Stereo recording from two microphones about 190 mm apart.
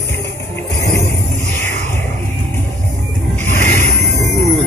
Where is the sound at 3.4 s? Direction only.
35° right (ahead or behind).